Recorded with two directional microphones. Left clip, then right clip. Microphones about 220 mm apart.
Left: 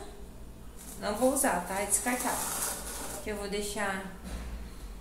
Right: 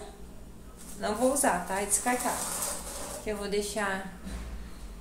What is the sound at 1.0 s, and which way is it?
A woman's voice, 30° right (ahead or behind).